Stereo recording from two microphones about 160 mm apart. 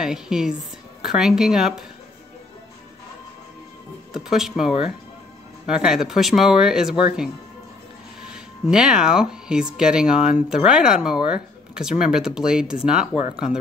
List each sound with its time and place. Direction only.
0.0 s speech: 5° right (ahead or behind)
4.1 s speech: 5° right (ahead or behind)
8.3 s speech: 5° right (ahead or behind)